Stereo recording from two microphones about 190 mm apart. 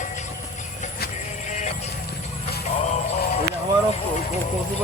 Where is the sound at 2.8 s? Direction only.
35° left (ahead or behind).